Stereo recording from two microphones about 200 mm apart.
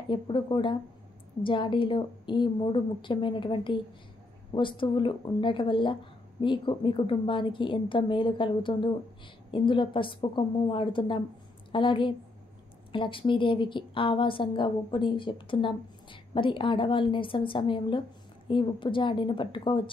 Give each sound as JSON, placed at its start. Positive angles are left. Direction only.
{"t": 0.1, "sound": "a woman's voice", "side_deg": 25}